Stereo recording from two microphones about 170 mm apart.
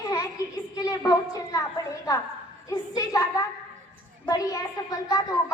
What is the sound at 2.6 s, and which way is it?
A woman's voice, 20° left (ahead or behind).